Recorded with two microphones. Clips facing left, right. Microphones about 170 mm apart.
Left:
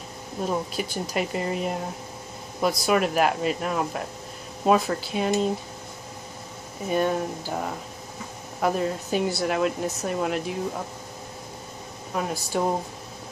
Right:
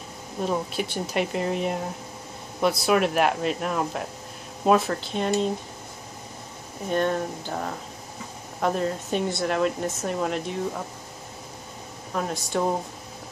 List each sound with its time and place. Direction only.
0.5 s speech: centre (ahead or behind)
6.9 s speech: 5° left (ahead or behind)
12.1 s speech: 5° left (ahead or behind)